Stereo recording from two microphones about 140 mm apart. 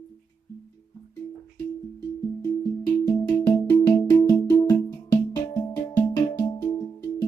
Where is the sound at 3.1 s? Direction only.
20° left (ahead or behind).